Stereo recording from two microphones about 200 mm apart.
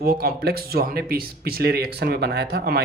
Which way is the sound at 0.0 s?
45° right (ahead or behind).